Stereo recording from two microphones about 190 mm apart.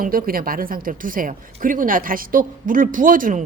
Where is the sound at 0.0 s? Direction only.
50° right (ahead or behind).